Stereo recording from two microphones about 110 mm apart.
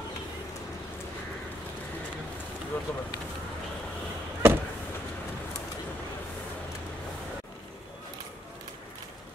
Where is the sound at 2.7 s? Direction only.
15° left (ahead or behind).